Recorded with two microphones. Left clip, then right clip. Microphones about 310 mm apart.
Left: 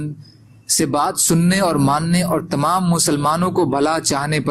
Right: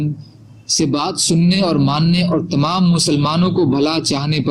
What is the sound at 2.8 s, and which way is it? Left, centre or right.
Speech, left.